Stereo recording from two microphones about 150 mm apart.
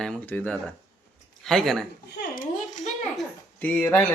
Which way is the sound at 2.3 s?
60° left (ahead or behind).